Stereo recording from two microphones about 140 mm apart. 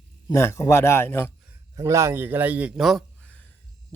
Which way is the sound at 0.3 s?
20° left (ahead or behind).